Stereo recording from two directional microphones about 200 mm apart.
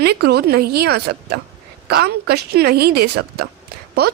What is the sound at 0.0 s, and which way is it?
A woman's voice, 50° right (ahead or behind).